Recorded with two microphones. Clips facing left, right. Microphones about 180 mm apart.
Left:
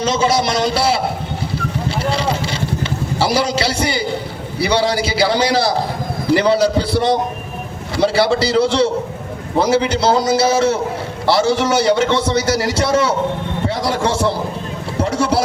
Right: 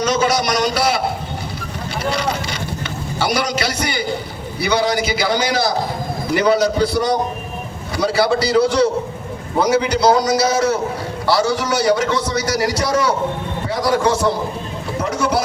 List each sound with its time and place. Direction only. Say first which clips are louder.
0.0 s a man's voice: left 1 dB; 30° left (ahead or behind)
2.0 s a sound: even; 30° left (ahead or behind)
4.6 s a man's voice: left 1 dB; 30° left (ahead or behind)
14.9 s vehicle: left 3 dB; 30° left (ahead or behind)